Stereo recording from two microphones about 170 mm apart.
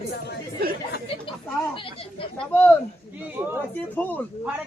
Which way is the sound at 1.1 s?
35° left (ahead or behind).